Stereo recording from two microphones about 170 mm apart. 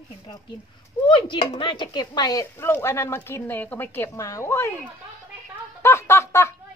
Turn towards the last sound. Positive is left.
turn(degrees=15)  # may be behind; listen again after turning